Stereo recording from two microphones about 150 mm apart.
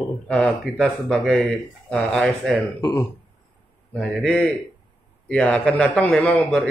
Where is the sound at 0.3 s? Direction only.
5° left (ahead or behind).